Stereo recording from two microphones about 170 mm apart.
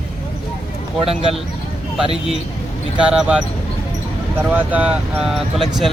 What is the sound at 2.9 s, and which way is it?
Speech, 5° right (ahead or behind).